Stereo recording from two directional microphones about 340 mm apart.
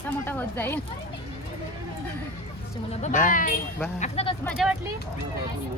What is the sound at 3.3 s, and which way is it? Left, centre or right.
Speech, left.